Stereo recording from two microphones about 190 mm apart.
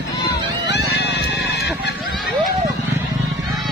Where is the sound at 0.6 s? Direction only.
65° left (ahead or behind).